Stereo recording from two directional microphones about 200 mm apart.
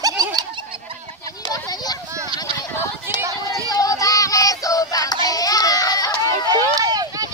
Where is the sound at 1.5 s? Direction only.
20° left (ahead or behind).